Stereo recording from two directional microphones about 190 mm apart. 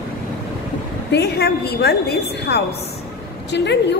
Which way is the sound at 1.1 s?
60° left (ahead or behind).